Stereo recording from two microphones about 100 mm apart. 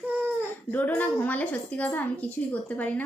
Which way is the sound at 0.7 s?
15° left (ahead or behind).